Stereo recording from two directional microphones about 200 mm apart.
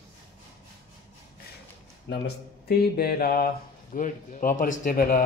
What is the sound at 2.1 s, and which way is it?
Speech, 50° left (ahead or behind).